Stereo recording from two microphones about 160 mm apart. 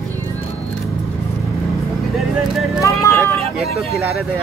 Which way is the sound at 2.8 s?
15° left (ahead or behind).